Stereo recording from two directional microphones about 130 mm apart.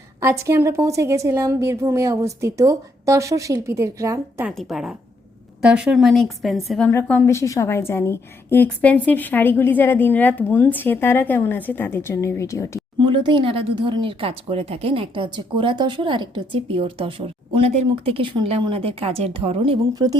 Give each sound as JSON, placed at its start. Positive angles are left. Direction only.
{"t": 0.2, "sound": "a woman's voice", "side_deg": -20}
{"t": 4.5, "sound": "a woman's voice", "side_deg": -5}
{"t": 6.8, "sound": "a woman's voice", "side_deg": 15}
{"t": 13.0, "sound": "a woman's voice", "side_deg": -40}
{"t": 20.0, "sound": "speech", "side_deg": -30}